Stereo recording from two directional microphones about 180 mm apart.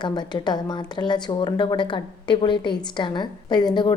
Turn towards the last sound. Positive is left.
turn(degrees=25)  # may be behind; listen again after turning